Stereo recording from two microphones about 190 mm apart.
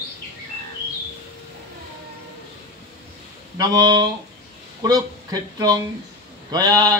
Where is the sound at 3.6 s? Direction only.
20° right (ahead or behind).